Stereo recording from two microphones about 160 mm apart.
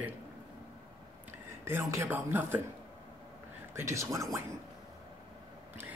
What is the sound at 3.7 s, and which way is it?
Speech, 20° right (ahead or behind).